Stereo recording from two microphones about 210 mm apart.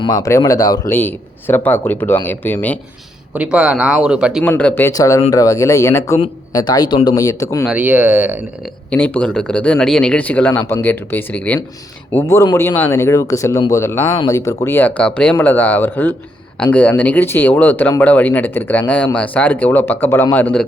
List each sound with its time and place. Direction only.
0.0 s speech: 15° left (ahead or behind)
3.3 s speech: 5° right (ahead or behind)
4.5 s speech: 10° left (ahead or behind)
7.7 s speech: 5° right (ahead or behind)
8.9 s speech: 5° left (ahead or behind)